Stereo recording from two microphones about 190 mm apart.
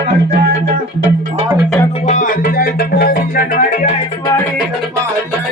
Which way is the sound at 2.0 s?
45° left (ahead or behind).